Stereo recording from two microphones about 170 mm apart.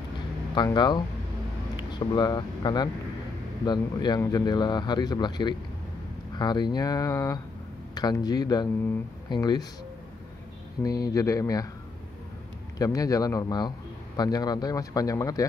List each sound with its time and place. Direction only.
0.7 s a man's voice: 25° left (ahead or behind)
10.8 s a man's voice: 20° left (ahead or behind)
12.7 s a man's voice: 20° left (ahead or behind)